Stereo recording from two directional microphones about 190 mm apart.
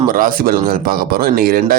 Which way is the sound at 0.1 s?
45° right (ahead or behind).